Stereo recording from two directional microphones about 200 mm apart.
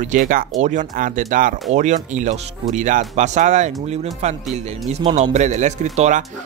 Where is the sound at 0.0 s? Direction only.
40° right (ahead or behind).